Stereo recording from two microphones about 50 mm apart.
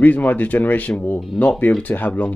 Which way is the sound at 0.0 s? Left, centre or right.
Left.